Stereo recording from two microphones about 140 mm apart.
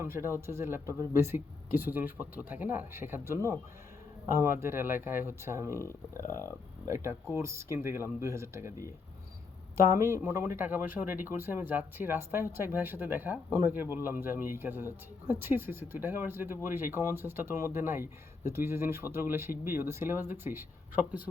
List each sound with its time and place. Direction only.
0.0 s speech: 15° right (ahead or behind)
6.8 s speech: 20° right (ahead or behind)